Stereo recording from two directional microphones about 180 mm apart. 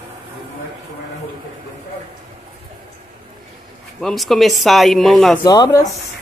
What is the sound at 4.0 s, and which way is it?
Speech, centre (ahead or behind).